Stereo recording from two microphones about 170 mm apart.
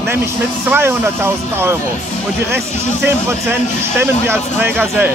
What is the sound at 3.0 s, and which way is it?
Speech, 10° right (ahead or behind).